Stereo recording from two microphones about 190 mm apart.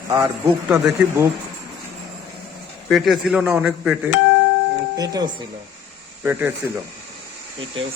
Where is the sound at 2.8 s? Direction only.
Centre (ahead or behind).